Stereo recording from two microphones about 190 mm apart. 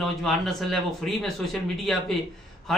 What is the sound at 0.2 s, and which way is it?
A man's voice, centre (ahead or behind).